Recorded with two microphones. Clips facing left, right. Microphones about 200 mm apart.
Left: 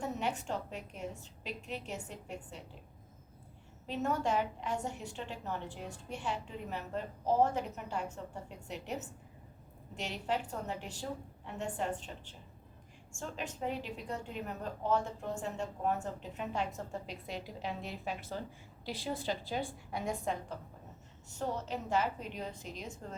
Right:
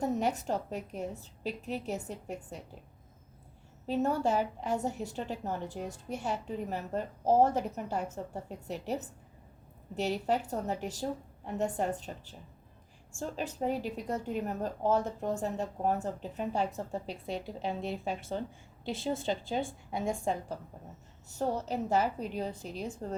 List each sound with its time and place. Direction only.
0.0 s a woman's voice: 40° right (ahead or behind)
3.8 s a woman's voice: 35° right (ahead or behind)